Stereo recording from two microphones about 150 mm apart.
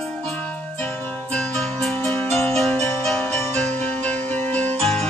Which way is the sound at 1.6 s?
5° left (ahead or behind).